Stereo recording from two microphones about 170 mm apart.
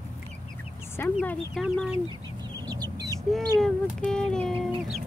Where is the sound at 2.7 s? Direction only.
20° right (ahead or behind).